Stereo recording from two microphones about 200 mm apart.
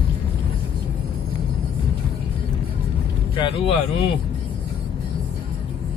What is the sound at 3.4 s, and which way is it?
Speech, 25° left (ahead or behind).